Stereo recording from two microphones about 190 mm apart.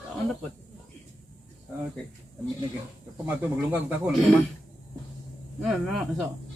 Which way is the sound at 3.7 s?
10° right (ahead or behind).